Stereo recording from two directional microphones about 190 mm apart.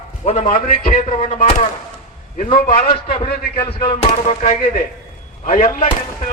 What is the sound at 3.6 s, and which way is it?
Speech, 30° left (ahead or behind).